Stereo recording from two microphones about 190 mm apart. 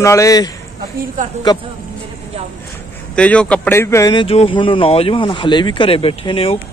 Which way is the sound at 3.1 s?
5° left (ahead or behind).